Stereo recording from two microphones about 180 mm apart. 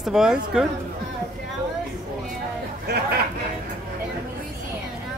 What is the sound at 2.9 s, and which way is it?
Chatter, 60° right (ahead or behind).